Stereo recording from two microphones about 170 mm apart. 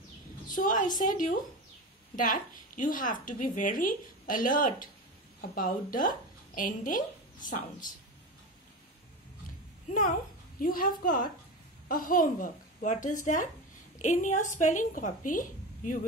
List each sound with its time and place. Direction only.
0.5 s a woman's voice: 50° left (ahead or behind)
9.8 s a woman's voice: 50° left (ahead or behind)